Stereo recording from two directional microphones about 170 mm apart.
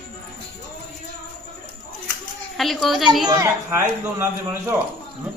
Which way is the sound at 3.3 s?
15° right (ahead or behind).